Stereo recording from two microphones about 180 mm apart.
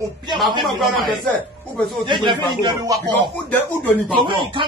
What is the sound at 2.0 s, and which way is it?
Speech, 25° right (ahead or behind).